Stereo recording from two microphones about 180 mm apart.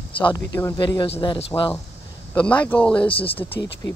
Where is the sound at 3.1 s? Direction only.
30° left (ahead or behind).